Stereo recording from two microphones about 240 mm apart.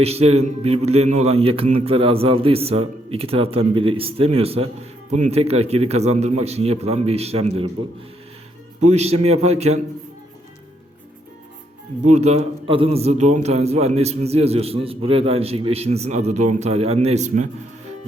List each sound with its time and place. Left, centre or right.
0.0 s a man's voice: right
8.9 s a man's voice: right
12.0 s a man's voice: right